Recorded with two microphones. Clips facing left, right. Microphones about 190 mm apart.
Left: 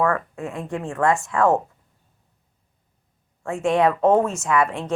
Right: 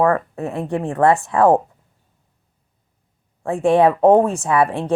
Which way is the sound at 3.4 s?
35° right (ahead or behind).